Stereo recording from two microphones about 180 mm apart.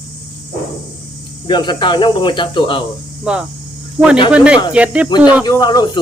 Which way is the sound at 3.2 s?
5° right (ahead or behind).